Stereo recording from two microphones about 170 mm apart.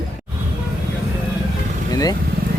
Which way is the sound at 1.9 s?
20° left (ahead or behind).